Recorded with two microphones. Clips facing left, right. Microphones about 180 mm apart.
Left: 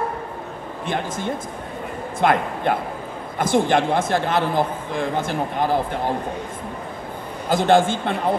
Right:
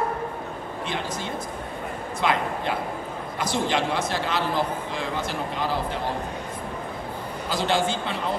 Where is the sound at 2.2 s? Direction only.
55° left (ahead or behind).